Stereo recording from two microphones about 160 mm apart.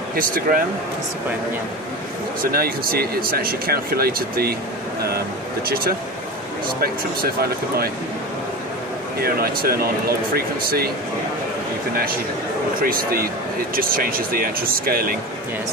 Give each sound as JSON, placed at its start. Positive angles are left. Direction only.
{"t": 0.1, "sound": "speech", "side_deg": -65}
{"t": 2.5, "sound": "speech", "side_deg": -70}
{"t": 6.8, "sound": "speech", "side_deg": -70}
{"t": 9.2, "sound": "speech", "side_deg": -70}
{"t": 12.8, "sound": "speech", "side_deg": -65}